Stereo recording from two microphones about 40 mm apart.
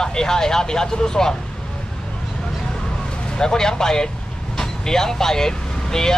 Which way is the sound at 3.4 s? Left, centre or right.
Centre.